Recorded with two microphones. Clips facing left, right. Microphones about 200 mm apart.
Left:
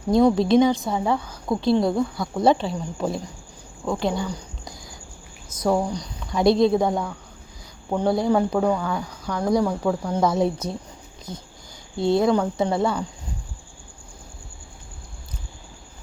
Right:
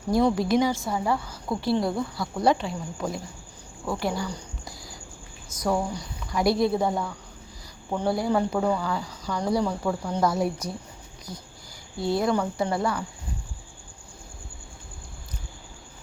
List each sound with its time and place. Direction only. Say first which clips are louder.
0.1 s a woman's voice: left 5 dB; 20° left (ahead or behind)
3.8 s a woman's voice: left 4 dB; 20° left (ahead or behind)
4.4 s a sound: left 1 dB; 20° left (ahead or behind)
5.5 s a woman's voice: left 4 dB; 25° left (ahead or behind)
6.8 s speech: left 3 dB; centre (ahead or behind)
8.1 s speech: left 4 dB; 15° left (ahead or behind); by 9.6 s 10° right (ahead or behind)
9.6 s speech: left 4 dB; 5° left (ahead or behind)
10.3 s a woman's voice: left 4 dB; 20° left (ahead or behind)